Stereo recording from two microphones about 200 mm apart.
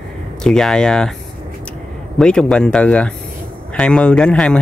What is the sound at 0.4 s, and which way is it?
Speech, centre (ahead or behind).